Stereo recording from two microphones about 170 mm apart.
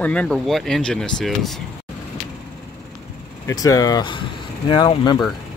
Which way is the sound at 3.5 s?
20° left (ahead or behind).